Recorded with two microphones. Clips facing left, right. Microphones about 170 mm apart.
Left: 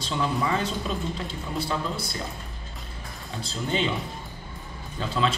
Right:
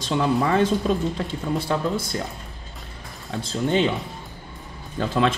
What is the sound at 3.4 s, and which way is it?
Speech, 55° right (ahead or behind).